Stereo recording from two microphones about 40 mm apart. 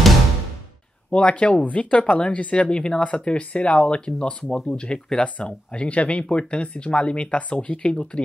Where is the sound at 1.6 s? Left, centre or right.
Left.